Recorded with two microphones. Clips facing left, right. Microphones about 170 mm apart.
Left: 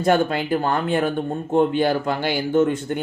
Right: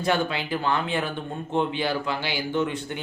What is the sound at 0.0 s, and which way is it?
Speech, 50° left (ahead or behind).